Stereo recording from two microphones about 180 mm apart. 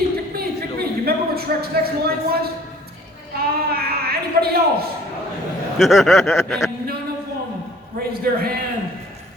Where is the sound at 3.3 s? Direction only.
60° right (ahead or behind).